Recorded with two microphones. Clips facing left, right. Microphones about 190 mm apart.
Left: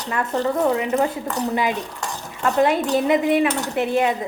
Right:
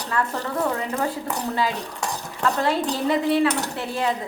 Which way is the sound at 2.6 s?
15° left (ahead or behind).